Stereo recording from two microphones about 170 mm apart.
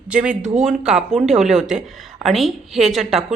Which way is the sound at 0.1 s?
5° right (ahead or behind).